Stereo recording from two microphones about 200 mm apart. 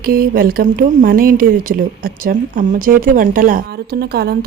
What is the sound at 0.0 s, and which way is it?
Speech, 50° right (ahead or behind).